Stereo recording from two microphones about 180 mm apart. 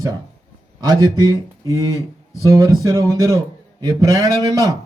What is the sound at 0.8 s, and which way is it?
A man's voice, 20° right (ahead or behind).